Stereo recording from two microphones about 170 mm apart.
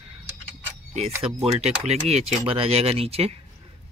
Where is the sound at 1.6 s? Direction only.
40° right (ahead or behind).